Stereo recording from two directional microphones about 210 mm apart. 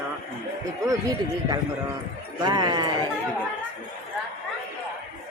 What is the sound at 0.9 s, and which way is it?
Speech, 15° right (ahead or behind).